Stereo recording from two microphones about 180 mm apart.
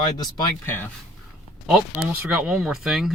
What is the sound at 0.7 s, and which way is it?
Speech, 10° left (ahead or behind).